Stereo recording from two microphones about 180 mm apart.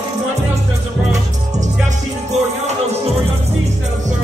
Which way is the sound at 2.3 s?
40° right (ahead or behind).